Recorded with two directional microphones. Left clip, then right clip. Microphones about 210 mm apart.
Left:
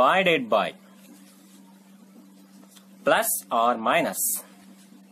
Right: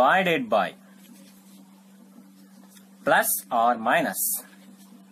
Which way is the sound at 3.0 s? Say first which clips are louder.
Right 1 dB; 15° left (ahead or behind).